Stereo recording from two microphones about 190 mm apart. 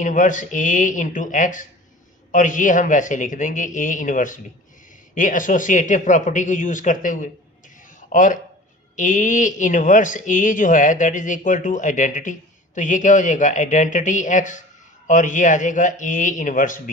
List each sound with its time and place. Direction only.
0.0 s a man's voice: 40° left (ahead or behind)